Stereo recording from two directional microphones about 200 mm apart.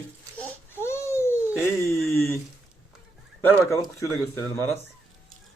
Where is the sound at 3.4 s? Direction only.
15° left (ahead or behind).